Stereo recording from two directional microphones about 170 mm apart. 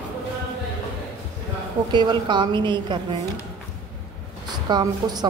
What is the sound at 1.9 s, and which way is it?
A woman's voice, 25° right (ahead or behind).